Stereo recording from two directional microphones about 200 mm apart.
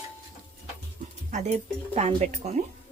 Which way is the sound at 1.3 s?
35° right (ahead or behind).